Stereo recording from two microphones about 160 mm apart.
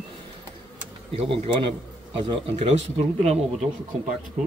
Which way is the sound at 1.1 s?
35° right (ahead or behind).